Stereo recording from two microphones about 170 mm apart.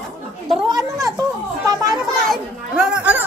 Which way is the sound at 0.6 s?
20° right (ahead or behind).